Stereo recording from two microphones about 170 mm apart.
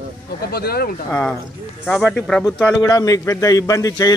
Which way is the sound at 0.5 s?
65° left (ahead or behind).